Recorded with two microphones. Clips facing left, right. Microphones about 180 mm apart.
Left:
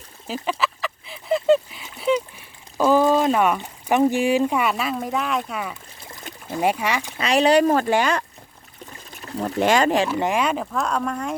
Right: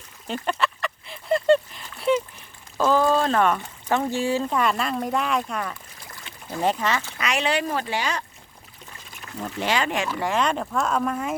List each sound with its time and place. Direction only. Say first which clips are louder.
0.3 s duck: left 1 dB; centre (ahead or behind)
2.7 s speech: left 3 dB; 15° left (ahead or behind)
7.2 s speech: left 11 dB; 35° left (ahead or behind); by 8.2 s 50° left (ahead or behind)
9.6 s speech: left 7 dB; 45° left (ahead or behind)
10.2 s speech: left 3 dB; 20° left (ahead or behind)
10.4 s speech: left 1 dB; 5° left (ahead or behind)